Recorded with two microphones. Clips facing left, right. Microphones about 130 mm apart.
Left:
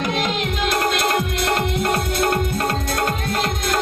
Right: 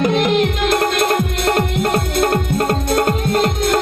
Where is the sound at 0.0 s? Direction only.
55° right (ahead or behind).